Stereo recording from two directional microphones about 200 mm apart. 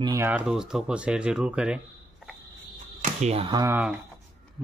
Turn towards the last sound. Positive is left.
turn(degrees=-10)  # may be behind; listen again after turning